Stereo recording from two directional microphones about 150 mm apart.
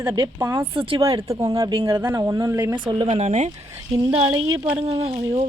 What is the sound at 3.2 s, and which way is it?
Speech, 50° right (ahead or behind).